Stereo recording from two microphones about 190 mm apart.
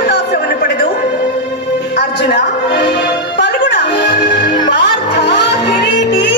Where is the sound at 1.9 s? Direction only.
65° left (ahead or behind).